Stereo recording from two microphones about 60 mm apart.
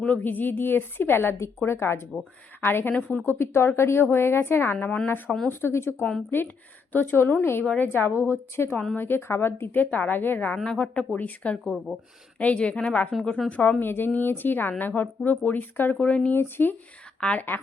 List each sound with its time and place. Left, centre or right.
0.0 s a woman's voice: left
9.8 s a woman's voice: left
10.5 s speech: centre
11.6 s speech: centre
12.4 s a woman's voice: left
16.3 s a woman's voice: left
17.2 s a woman's voice: centre